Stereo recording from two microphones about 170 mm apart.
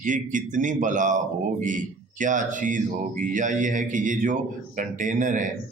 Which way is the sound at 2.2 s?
50° right (ahead or behind).